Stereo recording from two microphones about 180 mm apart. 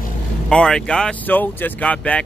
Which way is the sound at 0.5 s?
5° left (ahead or behind).